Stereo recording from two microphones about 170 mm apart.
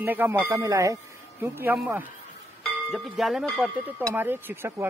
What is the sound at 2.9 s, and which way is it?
Speech, centre (ahead or behind).